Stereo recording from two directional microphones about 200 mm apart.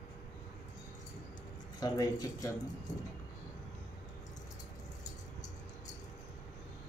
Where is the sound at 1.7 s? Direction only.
20° left (ahead or behind).